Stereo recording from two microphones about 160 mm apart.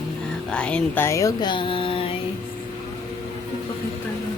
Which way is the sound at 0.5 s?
5° left (ahead or behind).